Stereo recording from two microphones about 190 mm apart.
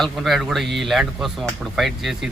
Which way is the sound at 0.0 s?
Centre (ahead or behind).